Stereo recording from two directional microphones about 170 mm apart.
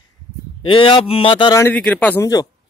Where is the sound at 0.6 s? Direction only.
30° left (ahead or behind).